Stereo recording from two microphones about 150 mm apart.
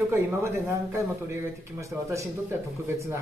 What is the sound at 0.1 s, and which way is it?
Speech, 15° right (ahead or behind).